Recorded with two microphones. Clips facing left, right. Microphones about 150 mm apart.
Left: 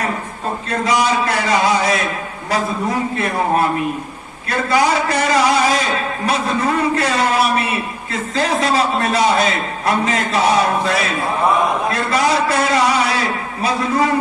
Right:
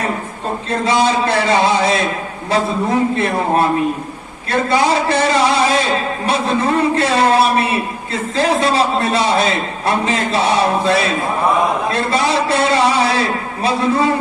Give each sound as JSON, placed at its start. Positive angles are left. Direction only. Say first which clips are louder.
{"t": 0.9, "sound": "a man's voice", "louder": "right 2 dB", "side_deg": -30}
{"t": 3.2, "sound": "a man's voice", "louder": "right 2 dB", "side_deg": -30}